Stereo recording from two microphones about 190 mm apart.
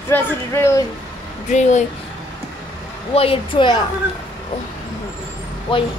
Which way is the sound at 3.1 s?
30° left (ahead or behind).